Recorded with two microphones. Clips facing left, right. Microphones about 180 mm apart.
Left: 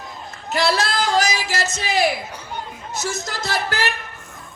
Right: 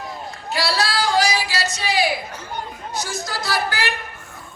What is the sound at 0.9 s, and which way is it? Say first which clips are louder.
Singing: even; 45° left (ahead or behind).